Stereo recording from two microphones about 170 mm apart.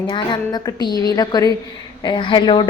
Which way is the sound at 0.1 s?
25° left (ahead or behind).